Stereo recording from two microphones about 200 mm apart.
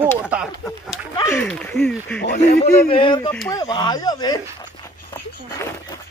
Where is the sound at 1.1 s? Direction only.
10° left (ahead or behind).